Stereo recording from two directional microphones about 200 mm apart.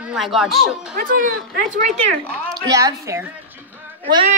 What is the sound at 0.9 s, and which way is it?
Speech, 45° right (ahead or behind).